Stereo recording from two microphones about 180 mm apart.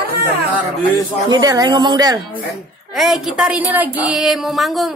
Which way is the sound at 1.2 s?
20° right (ahead or behind).